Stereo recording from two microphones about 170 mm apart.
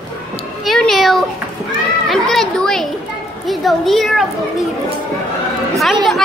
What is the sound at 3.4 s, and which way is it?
Speech, centre (ahead or behind).